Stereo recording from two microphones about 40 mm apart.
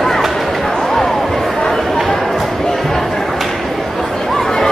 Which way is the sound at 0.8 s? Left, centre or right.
Centre.